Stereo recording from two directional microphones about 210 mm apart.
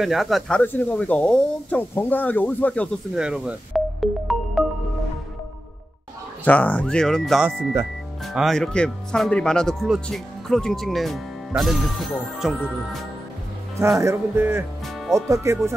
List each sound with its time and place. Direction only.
0.0 s speech: centre (ahead or behind)
3.2 s music: 5° right (ahead or behind)
6.4 s speech: 5° left (ahead or behind)
13.7 s speech: 15° right (ahead or behind)